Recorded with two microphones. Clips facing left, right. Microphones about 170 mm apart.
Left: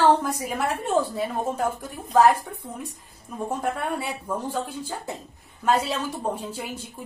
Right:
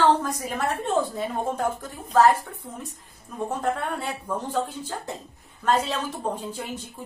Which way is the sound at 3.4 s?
10° left (ahead or behind).